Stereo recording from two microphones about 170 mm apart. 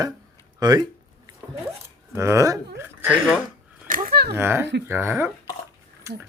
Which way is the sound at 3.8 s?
55° right (ahead or behind).